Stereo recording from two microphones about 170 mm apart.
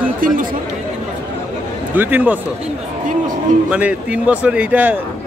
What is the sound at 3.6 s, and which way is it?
Speech, 10° right (ahead or behind).